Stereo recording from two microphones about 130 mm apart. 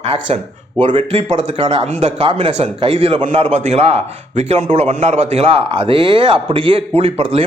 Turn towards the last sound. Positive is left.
turn(degrees=-50)  # may be behind; listen again after turning